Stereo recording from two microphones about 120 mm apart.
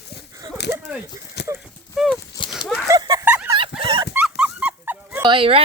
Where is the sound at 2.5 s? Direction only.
Centre (ahead or behind).